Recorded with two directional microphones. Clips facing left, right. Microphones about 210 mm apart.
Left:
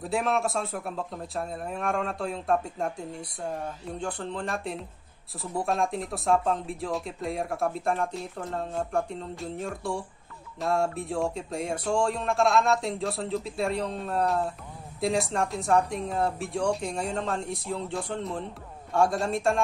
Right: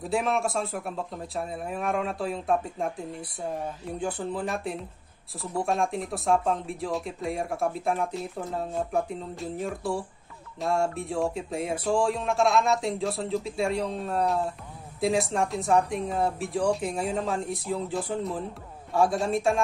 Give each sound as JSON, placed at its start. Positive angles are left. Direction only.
{"t": 0.0, "sound": "speech", "side_deg": 0}